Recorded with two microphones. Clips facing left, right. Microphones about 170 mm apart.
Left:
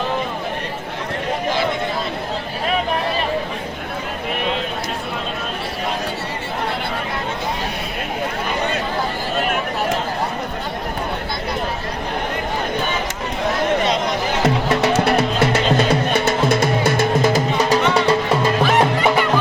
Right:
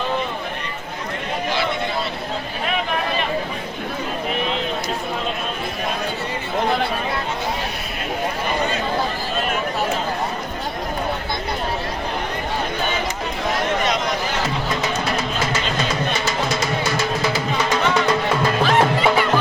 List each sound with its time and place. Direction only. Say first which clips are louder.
14.4 s music: left 6 dB; 70° left (ahead or behind)
17.0 s music: left 5 dB; 45° left (ahead or behind); by 18.2 s 30° left (ahead or behind)
18.6 s music: left 1 dB; 15° left (ahead or behind)